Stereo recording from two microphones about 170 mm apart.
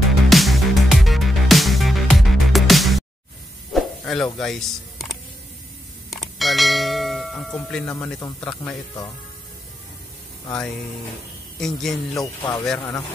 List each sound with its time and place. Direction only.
0.3 s music: centre (ahead or behind)
3.7 s a sound: 5° left (ahead or behind)
6.0 s bell: centre (ahead or behind)
11.6 s a man's voice: centre (ahead or behind)
12.2 s speech: 20° left (ahead or behind)
12.6 s speech: 10° left (ahead or behind)